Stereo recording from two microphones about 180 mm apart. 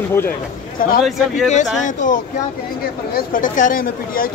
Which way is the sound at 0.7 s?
55° left (ahead or behind).